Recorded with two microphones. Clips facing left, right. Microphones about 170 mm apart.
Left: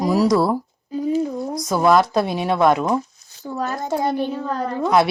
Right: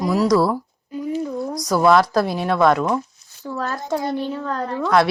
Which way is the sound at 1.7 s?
20° left (ahead or behind).